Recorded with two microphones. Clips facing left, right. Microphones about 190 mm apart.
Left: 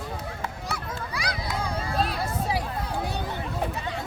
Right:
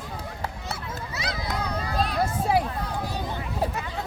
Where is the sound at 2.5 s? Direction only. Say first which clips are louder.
Right 8 dB; 55° right (ahead or behind).